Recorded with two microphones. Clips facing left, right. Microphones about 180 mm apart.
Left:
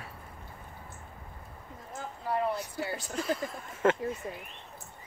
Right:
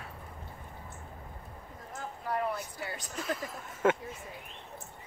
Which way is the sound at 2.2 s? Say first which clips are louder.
Left 3 dB; 30° left (ahead or behind).